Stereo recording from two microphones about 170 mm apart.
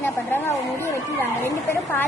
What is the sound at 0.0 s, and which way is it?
Chatter, 10° left (ahead or behind).